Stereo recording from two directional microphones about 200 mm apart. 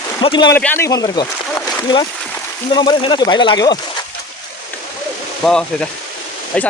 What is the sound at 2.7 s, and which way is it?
Speech, 25° left (ahead or behind).